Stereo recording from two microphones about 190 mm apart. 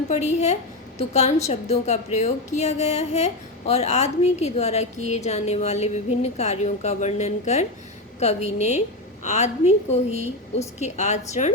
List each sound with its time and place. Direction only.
0.1 s a woman's voice: 35° left (ahead or behind)